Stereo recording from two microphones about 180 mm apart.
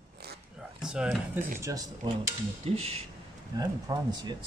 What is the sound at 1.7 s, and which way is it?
Speech, 15° right (ahead or behind).